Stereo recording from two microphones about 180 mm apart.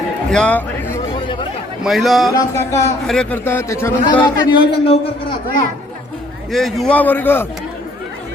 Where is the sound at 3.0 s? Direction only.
5° left (ahead or behind); by 4.6 s 20° left (ahead or behind).